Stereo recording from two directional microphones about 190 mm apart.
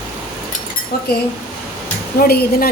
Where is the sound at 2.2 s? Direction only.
55° left (ahead or behind).